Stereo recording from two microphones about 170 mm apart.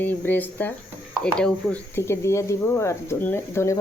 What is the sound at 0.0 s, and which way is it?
Speech, 10° left (ahead or behind).